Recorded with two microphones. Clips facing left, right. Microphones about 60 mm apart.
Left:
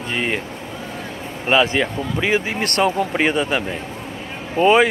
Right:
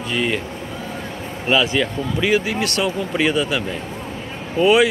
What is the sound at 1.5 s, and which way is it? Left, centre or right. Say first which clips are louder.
Speech: left 1 dB; left.